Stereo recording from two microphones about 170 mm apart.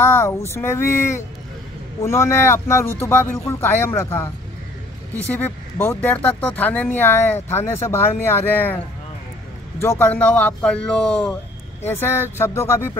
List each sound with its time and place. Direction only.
0.0 s speech: 15° left (ahead or behind)
5.8 s speech: 15° left (ahead or behind)